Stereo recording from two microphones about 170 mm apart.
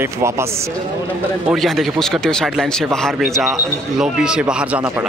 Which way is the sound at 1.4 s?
Centre (ahead or behind).